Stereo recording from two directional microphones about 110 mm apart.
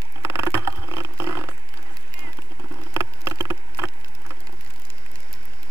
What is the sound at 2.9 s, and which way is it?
Insect, 25° right (ahead or behind).